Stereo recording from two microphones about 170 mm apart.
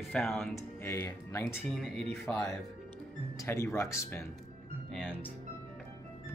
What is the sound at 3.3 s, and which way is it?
Speech, 15° left (ahead or behind).